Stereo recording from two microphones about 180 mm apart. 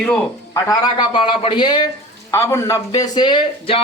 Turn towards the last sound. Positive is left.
turn(degrees=25)  # may be behind; listen again after turning